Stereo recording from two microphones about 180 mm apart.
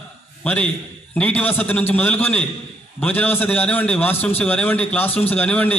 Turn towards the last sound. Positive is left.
turn(degrees=10)  # may be behind; listen again after turning